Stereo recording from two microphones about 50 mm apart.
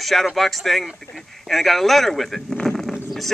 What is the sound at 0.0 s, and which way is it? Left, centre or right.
Speech, centre.